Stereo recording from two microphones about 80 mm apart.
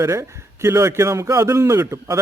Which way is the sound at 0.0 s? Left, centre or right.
Right.